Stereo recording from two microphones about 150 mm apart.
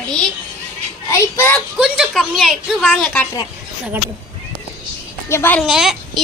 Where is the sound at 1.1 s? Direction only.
15° left (ahead or behind).